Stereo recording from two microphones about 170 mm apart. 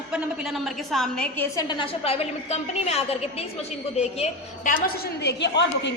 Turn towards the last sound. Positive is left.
turn(degrees=90)